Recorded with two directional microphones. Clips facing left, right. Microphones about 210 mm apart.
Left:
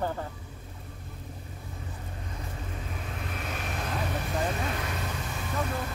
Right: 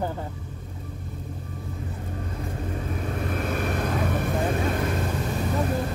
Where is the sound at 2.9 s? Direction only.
45° right (ahead or behind).